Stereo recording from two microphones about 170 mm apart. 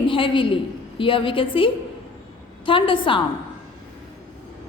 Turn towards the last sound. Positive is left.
turn(degrees=30)  # may be behind; listen again after turning